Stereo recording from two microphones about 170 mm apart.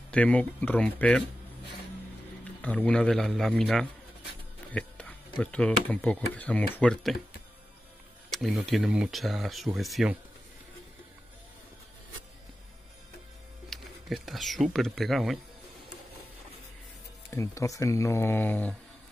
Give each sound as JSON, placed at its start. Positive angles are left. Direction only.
{"t": 0.1, "sound": "speech", "side_deg": 5}
{"t": 2.6, "sound": "speech", "side_deg": 10}
{"t": 8.3, "sound": "speech", "side_deg": 0}
{"t": 13.7, "sound": "speech", "side_deg": 0}
{"t": 17.3, "sound": "speech", "side_deg": 20}